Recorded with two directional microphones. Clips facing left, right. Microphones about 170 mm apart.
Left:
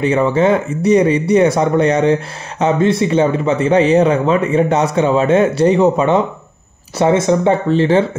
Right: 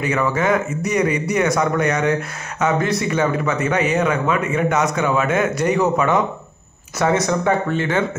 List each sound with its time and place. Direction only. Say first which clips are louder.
0.0 s speech: left 6 dB; 30° left (ahead or behind)